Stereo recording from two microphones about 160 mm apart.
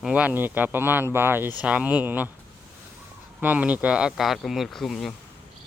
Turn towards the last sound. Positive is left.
turn(degrees=0)  # may be behind; listen again after turning